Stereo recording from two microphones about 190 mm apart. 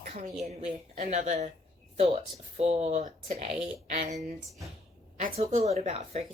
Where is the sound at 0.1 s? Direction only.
35° right (ahead or behind).